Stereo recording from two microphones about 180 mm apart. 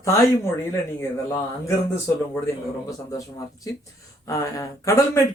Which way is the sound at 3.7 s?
20° left (ahead or behind).